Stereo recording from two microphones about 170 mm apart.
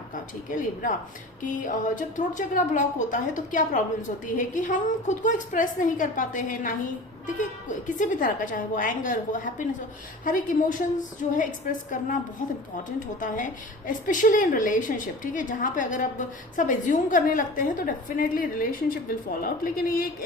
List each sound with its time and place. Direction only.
0.1 s a woman's voice: 50° left (ahead or behind)
13.1 s a woman's voice: 50° left (ahead or behind)